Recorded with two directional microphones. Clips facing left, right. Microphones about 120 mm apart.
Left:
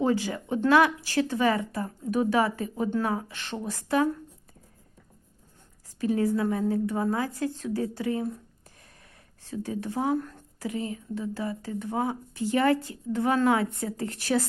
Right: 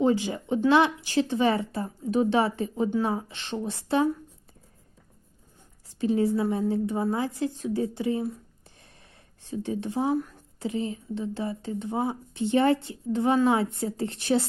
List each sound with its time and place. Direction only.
0.0 s speech: 20° right (ahead or behind)
6.0 s speech: 20° right (ahead or behind)
9.5 s speech: 20° right (ahead or behind)
10.6 s speech: 25° right (ahead or behind)